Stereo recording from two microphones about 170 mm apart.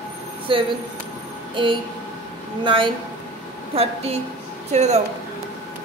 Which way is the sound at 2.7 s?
30° right (ahead or behind).